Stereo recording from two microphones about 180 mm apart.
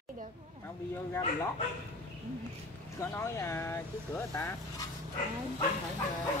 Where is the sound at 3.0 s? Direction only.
15° left (ahead or behind).